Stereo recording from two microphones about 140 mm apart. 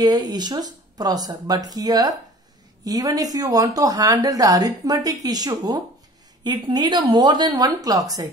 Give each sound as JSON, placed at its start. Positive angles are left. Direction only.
{"t": 0.0, "sound": "speech", "side_deg": -30}